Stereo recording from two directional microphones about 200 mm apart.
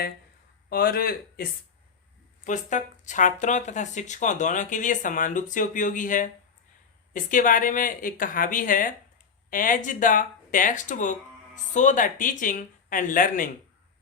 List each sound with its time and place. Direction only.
0.7 s speech: 45° left (ahead or behind)